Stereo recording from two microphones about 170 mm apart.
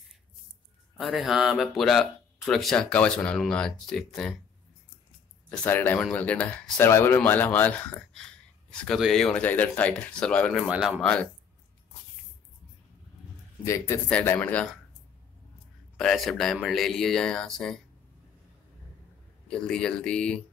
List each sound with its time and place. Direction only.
0.9 s speech: centre (ahead or behind)
5.5 s speech: 10° left (ahead or behind)
14.0 s speech: 10° left (ahead or behind)
16.0 s speech: centre (ahead or behind)
19.4 s speech: 5° left (ahead or behind)